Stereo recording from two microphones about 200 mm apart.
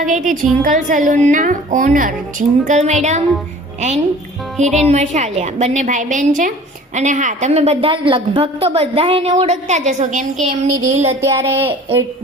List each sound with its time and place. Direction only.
0.0 s a woman's voice: 40° right (ahead or behind)
11.2 s speech: 15° right (ahead or behind)